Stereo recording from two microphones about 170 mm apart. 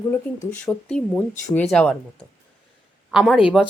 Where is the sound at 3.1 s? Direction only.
Centre (ahead or behind).